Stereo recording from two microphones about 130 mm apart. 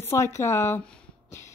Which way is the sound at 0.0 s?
20° left (ahead or behind).